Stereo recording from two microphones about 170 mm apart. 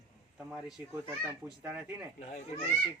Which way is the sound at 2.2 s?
40° left (ahead or behind).